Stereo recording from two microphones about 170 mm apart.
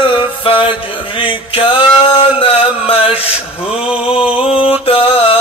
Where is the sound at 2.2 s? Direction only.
35° left (ahead or behind).